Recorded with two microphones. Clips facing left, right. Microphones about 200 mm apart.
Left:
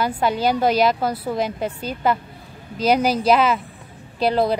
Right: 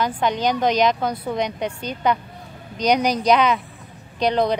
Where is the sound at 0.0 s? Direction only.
5° left (ahead or behind).